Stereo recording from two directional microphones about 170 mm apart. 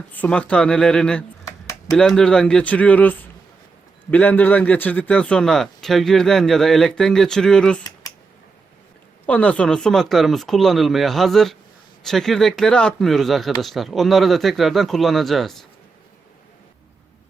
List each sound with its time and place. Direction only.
0.1 s a man's voice: 10° left (ahead or behind)
1.5 s a sound: 20° left (ahead or behind)
2.0 s a man's voice: 5° left (ahead or behind)
9.2 s a man's voice: 10° left (ahead or behind)